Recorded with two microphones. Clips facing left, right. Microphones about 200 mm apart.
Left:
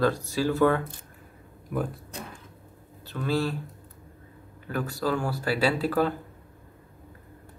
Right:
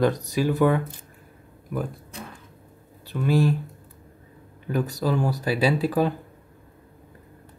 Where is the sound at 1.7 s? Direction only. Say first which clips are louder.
Even; centre (ahead or behind).